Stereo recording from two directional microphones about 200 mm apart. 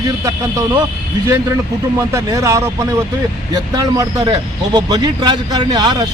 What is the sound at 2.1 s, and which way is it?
A man's voice, 15° right (ahead or behind).